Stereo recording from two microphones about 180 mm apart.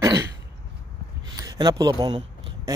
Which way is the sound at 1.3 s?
20° right (ahead or behind).